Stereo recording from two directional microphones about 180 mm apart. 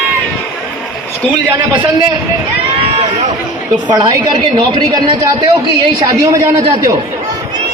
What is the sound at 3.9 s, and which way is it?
A woman's voice, 25° right (ahead or behind).